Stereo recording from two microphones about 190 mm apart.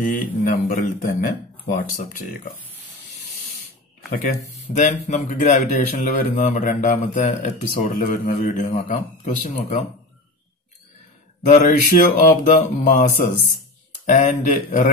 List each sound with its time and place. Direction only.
0.0 s speech: 45° left (ahead or behind)
4.7 s a man's voice: 40° left (ahead or behind)
11.4 s a man's voice: 40° left (ahead or behind)